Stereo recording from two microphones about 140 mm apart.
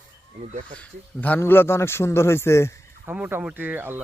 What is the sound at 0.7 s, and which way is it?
A man's voice, 10° left (ahead or behind).